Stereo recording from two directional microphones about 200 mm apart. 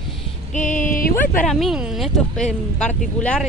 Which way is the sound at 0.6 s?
40° left (ahead or behind).